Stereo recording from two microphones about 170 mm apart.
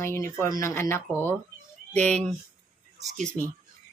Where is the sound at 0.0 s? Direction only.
15° left (ahead or behind).